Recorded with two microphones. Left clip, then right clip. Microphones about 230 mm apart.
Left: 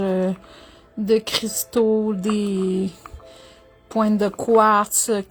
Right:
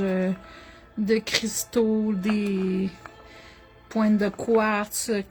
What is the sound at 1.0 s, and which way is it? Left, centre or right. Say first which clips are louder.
Speech: left 4 dB; centre.